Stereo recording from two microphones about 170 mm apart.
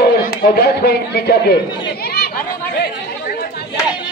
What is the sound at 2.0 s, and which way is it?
Chatter, 65° left (ahead or behind).